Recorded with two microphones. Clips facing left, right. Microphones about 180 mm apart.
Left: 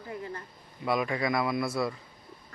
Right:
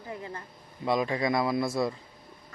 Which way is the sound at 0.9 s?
25° right (ahead or behind).